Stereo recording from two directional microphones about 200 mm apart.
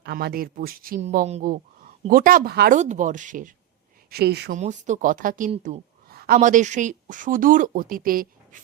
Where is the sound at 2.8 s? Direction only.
40° right (ahead or behind).